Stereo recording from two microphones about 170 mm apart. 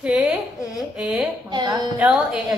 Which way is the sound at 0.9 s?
5° right (ahead or behind).